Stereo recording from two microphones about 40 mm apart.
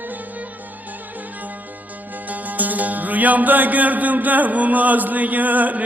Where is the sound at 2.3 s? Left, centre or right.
Right.